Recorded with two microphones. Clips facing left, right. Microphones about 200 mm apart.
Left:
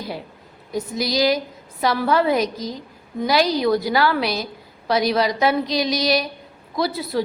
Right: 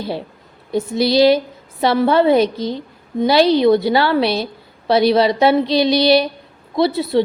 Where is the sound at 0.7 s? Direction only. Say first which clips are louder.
Right 7 dB; 30° right (ahead or behind).